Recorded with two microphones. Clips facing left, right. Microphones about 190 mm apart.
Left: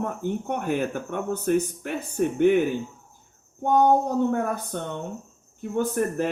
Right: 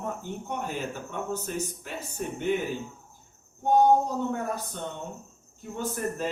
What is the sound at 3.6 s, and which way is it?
Speech, 60° left (ahead or behind).